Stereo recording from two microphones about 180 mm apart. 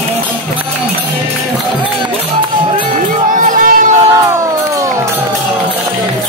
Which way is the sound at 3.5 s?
50° right (ahead or behind).